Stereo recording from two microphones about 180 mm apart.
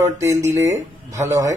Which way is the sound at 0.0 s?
15° right (ahead or behind).